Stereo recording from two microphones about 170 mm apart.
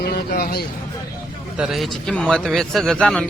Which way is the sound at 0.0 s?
65° left (ahead or behind).